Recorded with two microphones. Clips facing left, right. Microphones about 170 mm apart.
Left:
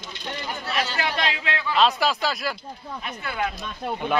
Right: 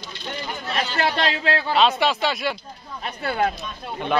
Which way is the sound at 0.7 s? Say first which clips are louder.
Right 3 dB; 35° right (ahead or behind).